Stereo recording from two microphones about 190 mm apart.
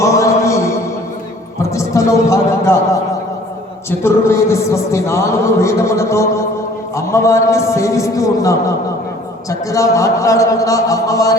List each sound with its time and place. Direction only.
0.0 s mantra: 15° left (ahead or behind)
1.7 s a sound: 15° left (ahead or behind)
3.8 s music: 15° left (ahead or behind)